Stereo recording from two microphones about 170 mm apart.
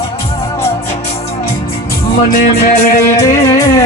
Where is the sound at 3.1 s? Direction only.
15° left (ahead or behind).